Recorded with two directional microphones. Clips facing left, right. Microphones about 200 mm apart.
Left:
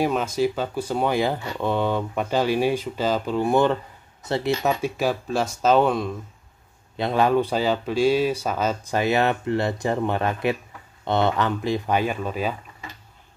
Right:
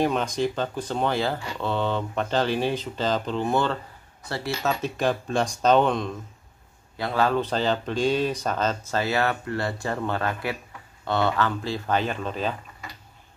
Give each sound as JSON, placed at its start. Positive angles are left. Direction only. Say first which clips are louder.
{"t": 0.0, "sound": "speech", "louder": "left 2 dB", "side_deg": 5}
{"t": 7.0, "sound": "speech", "louder": "left 4 dB", "side_deg": 20}